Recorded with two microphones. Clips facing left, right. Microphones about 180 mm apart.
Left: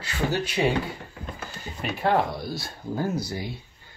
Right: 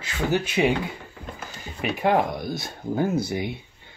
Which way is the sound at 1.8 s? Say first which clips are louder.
Right 2 dB; 15° right (ahead or behind).